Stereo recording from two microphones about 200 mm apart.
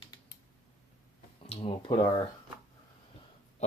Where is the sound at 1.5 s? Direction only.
25° left (ahead or behind).